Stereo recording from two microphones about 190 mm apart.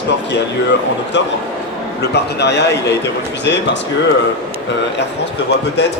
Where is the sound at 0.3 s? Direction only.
65° left (ahead or behind).